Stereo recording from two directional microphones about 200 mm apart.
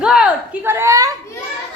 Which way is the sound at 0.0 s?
5° right (ahead or behind).